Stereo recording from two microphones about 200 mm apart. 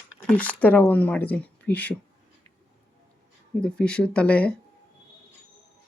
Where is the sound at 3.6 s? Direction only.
5° left (ahead or behind).